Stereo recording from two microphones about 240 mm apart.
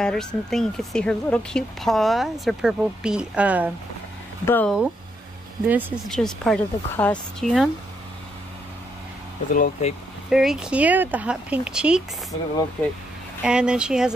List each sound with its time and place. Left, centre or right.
0.0 s speech: centre
4.5 s speech: centre
5.7 s speech: centre
9.5 s speech: left
10.3 s speech: centre